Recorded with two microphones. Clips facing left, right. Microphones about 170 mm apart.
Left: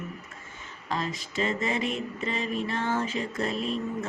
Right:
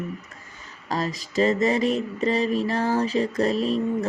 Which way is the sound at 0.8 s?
40° right (ahead or behind).